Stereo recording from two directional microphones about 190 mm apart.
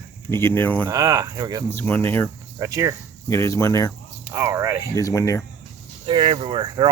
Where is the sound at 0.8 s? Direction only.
15° right (ahead or behind).